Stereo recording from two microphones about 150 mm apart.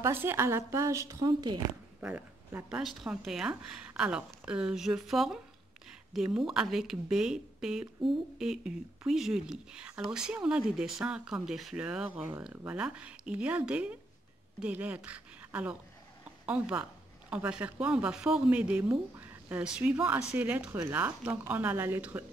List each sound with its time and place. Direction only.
0.0 s a woman's voice: 15° right (ahead or behind)
2.0 s a woman's voice: 10° right (ahead or behind)